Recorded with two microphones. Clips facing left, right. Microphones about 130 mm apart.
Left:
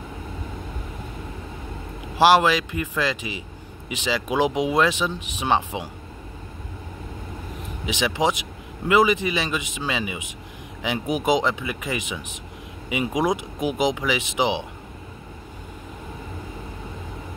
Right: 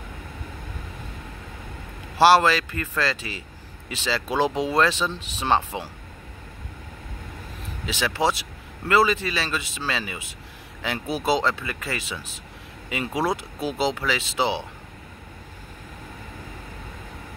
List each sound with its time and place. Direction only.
2.1 s a man's voice: 15° left (ahead or behind)
7.8 s a man's voice: 15° left (ahead or behind)